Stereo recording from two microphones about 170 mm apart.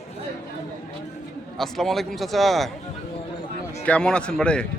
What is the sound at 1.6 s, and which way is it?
A man's voice, centre (ahead or behind).